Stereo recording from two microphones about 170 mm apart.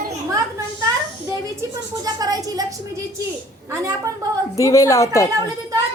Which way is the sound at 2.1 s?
20° right (ahead or behind).